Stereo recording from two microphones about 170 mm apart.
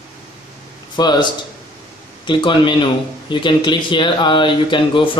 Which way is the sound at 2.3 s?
30° left (ahead or behind).